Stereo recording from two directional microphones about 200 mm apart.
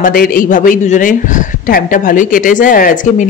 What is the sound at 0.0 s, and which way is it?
Speech, 45° left (ahead or behind).